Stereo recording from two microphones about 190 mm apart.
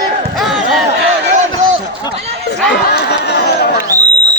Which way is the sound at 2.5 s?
60° left (ahead or behind).